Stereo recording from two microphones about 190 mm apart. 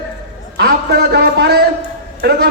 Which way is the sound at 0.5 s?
55° right (ahead or behind).